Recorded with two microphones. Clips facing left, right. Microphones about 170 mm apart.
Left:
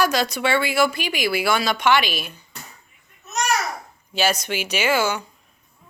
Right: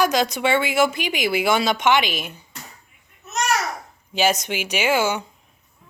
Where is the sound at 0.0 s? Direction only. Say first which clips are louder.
Right 1 dB; 15° right (ahead or behind).